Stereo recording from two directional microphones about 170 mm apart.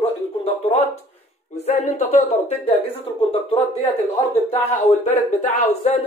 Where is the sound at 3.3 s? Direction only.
35° left (ahead or behind).